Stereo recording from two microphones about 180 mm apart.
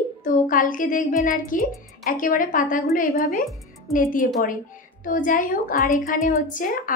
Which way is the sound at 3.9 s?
45° left (ahead or behind).